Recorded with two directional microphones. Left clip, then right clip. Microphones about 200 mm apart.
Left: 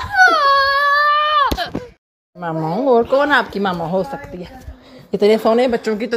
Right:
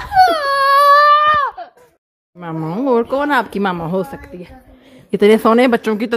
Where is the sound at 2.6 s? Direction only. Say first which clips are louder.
Left 2 dB; 35° right (ahead or behind).